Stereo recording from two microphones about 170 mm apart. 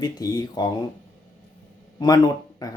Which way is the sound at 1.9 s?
25° left (ahead or behind).